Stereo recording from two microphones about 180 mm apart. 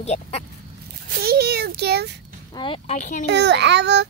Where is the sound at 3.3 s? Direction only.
75° right (ahead or behind).